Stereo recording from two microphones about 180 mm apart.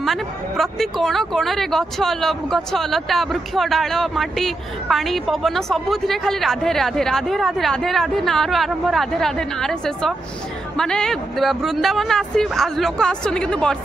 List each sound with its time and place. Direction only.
0.0 s speech: centre (ahead or behind)